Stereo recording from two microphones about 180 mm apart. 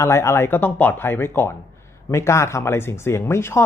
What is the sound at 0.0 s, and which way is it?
Speech, 15° left (ahead or behind).